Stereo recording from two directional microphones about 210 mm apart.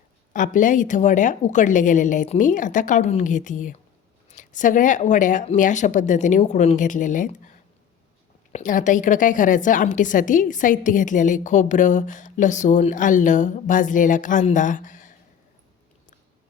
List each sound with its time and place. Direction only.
0.3 s a woman's voice: 40° left (ahead or behind)
8.5 s a woman's voice: 35° left (ahead or behind)